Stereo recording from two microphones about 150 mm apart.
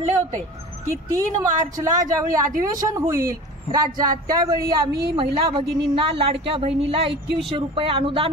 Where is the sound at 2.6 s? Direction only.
20° right (ahead or behind).